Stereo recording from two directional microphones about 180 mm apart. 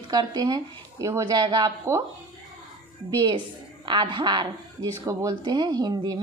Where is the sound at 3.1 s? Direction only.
25° right (ahead or behind).